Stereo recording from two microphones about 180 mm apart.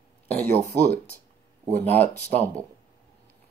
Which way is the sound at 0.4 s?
10° left (ahead or behind).